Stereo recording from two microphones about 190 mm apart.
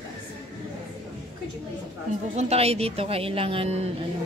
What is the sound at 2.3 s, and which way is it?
A woman's voice, 30° right (ahead or behind).